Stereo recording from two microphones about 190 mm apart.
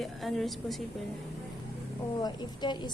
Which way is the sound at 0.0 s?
Centre (ahead or behind).